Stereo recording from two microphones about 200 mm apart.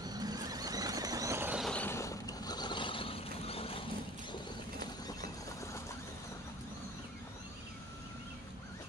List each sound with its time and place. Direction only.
0.0 s vehicle: 20° right (ahead or behind)
1.6 s vehicle: 5° left (ahead or behind); by 3.8 s 30° left (ahead or behind)